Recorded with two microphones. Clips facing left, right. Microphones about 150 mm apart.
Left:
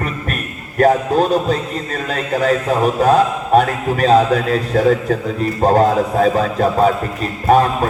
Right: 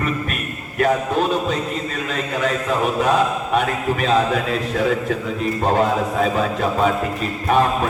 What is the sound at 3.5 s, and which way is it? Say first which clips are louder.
A man's voice: left 7 dB; 40° left (ahead or behind).